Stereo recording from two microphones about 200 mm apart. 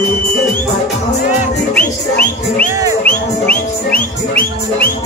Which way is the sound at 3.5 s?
45° left (ahead or behind).